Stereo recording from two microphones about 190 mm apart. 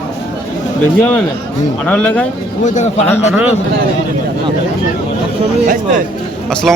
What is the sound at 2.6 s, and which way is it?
Speech, 40° left (ahead or behind).